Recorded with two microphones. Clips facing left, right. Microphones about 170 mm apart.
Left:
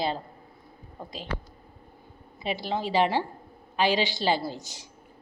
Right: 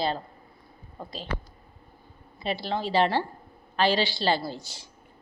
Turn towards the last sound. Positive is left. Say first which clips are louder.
# even
turn(degrees=20)  # may be behind; listen again after turning